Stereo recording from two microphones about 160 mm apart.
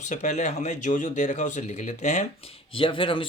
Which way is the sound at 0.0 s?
50° left (ahead or behind).